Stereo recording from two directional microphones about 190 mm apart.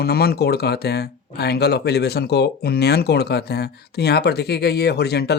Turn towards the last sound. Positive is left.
turn(degrees=60)  # may be behind; listen again after turning